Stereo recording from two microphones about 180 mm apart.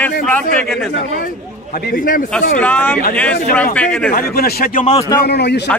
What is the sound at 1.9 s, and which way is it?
Speech, 50° left (ahead or behind).